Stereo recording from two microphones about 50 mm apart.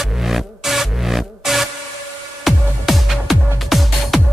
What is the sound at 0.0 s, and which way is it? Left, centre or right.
Music, centre.